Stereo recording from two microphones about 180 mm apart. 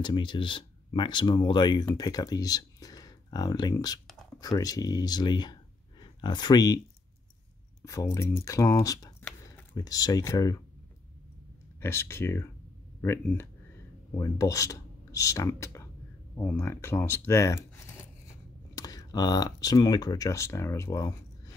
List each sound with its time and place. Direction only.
0.0 s speech: 25° left (ahead or behind)
7.8 s speech: 15° left (ahead or behind)
11.8 s speech: 15° left (ahead or behind)